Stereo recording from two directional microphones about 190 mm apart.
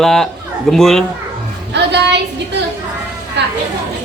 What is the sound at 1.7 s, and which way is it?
A woman's voice, 65° right (ahead or behind).